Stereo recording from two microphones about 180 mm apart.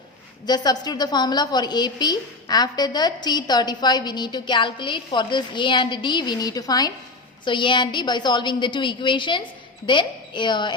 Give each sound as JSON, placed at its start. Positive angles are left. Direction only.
{"t": 0.4, "sound": "a woman's voice", "side_deg": 25}